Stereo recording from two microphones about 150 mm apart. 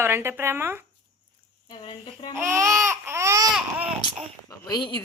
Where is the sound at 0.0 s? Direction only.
15° right (ahead or behind).